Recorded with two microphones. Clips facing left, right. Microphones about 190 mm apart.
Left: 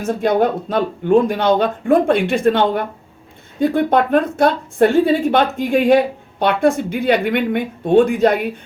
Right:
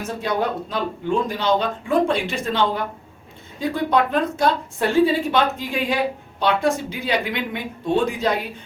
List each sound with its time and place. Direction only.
0.2 s speech: 50° left (ahead or behind)